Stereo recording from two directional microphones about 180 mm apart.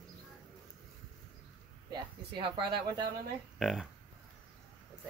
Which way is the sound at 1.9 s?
25° right (ahead or behind).